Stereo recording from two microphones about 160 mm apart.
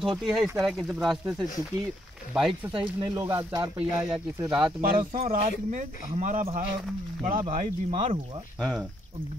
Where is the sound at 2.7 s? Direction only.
30° right (ahead or behind).